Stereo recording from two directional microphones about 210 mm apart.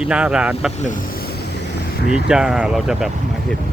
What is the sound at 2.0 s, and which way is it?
Speech, 5° right (ahead or behind).